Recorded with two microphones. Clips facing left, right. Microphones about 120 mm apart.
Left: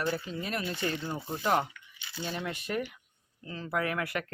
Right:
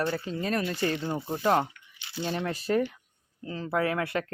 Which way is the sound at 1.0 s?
20° right (ahead or behind).